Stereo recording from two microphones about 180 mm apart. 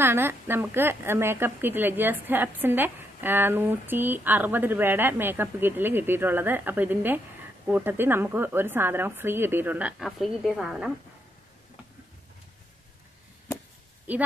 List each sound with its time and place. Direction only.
0.0 s a woman's voice: 10° right (ahead or behind)